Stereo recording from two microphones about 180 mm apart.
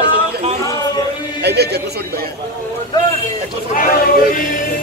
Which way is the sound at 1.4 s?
65° right (ahead or behind).